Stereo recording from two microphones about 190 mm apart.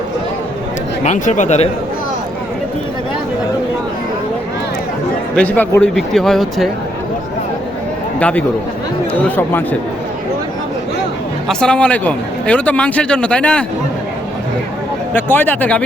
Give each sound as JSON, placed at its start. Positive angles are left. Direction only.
{"t": 1.0, "sound": "speech", "side_deg": 40}
{"t": 5.4, "sound": "speech", "side_deg": 10}
{"t": 8.2, "sound": "a man's voice", "side_deg": 5}
{"t": 11.4, "sound": "a man's voice", "side_deg": 5}
{"t": 15.1, "sound": "a man's voice", "side_deg": 10}